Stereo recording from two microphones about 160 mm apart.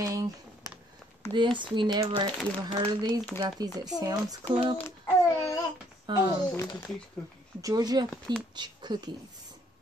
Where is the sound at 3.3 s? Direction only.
25° right (ahead or behind).